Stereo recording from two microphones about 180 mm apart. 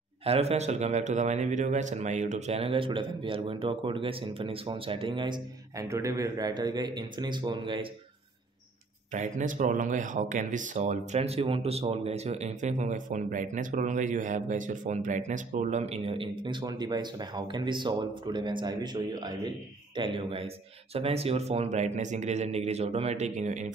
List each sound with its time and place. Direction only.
0.2 s a man's voice: 35° right (ahead or behind)
9.1 s speech: 45° right (ahead or behind)